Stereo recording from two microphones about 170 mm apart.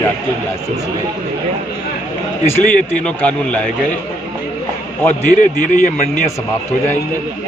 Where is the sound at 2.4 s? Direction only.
10° left (ahead or behind).